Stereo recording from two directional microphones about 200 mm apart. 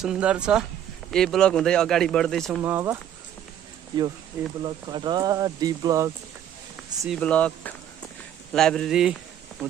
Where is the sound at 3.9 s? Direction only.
20° right (ahead or behind).